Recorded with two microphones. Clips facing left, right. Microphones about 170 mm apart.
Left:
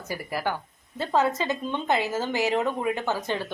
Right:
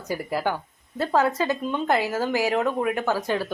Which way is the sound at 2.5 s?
20° left (ahead or behind).